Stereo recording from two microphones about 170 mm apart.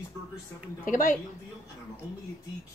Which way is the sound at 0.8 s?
55° left (ahead or behind).